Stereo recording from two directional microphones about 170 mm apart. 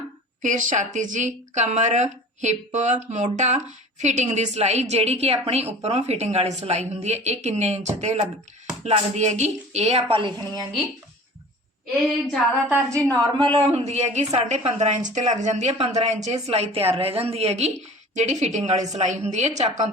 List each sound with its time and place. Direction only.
0.4 s a woman's voice: 50° right (ahead or behind); by 10.6 s 30° right (ahead or behind)
12.6 s a woman's voice: 15° right (ahead or behind)
13.1 s a woman's voice: 25° right (ahead or behind); by 19.8 s 40° right (ahead or behind)